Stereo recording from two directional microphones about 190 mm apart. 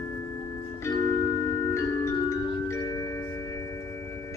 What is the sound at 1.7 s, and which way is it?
Music, 15° left (ahead or behind).